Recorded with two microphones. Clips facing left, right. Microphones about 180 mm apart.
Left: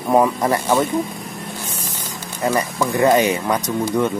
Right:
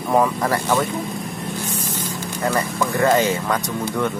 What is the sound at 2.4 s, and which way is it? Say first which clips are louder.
Speech: left 2 dB; 20° left (ahead or behind).